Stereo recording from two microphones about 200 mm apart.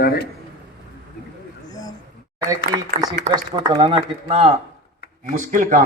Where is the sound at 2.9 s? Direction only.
40° right (ahead or behind).